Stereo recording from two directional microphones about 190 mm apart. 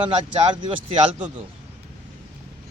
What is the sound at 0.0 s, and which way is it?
Speech, 25° right (ahead or behind).